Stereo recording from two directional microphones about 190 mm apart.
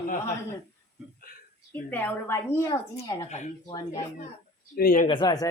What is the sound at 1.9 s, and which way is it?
Speech, 10° left (ahead or behind).